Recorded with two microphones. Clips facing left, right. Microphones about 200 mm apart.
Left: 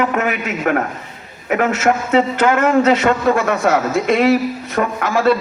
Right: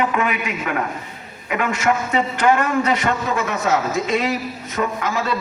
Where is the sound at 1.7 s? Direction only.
75° left (ahead or behind).